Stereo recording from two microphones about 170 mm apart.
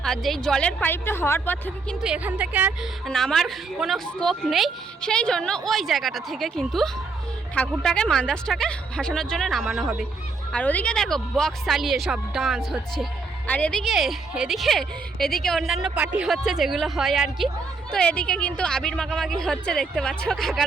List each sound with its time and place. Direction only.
0.0 s a woman's voice: centre (ahead or behind)
2.0 s a woman's voice: 5° right (ahead or behind)
3.1 s a woman's voice: 5° left (ahead or behind)
10.5 s a woman's voice: 10° left (ahead or behind)